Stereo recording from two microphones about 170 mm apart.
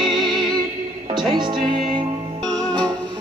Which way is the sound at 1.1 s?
25° right (ahead or behind).